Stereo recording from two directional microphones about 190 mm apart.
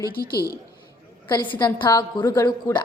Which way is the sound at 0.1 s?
50° left (ahead or behind).